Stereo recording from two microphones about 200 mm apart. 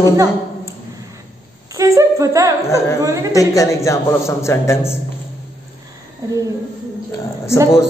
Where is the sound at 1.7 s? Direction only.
15° right (ahead or behind).